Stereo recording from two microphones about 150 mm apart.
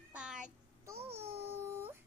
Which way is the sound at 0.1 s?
5° right (ahead or behind).